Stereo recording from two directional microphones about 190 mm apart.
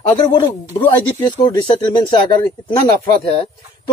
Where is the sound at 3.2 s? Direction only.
30° left (ahead or behind).